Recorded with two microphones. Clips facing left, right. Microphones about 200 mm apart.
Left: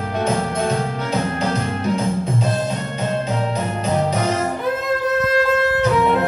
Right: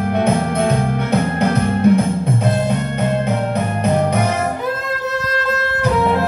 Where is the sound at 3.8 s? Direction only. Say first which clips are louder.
Right 3 dB; 60° right (ahead or behind).